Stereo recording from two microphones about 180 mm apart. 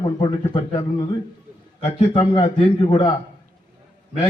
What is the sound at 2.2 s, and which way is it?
Speech, 25° left (ahead or behind).